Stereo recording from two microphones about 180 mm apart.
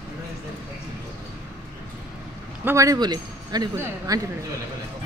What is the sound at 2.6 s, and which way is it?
Speech, 15° right (ahead or behind).